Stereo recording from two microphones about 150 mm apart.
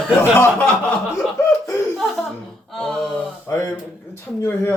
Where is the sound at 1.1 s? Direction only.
20° left (ahead or behind).